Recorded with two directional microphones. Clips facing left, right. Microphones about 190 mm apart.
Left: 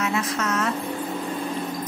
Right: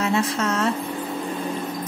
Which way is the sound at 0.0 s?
30° right (ahead or behind).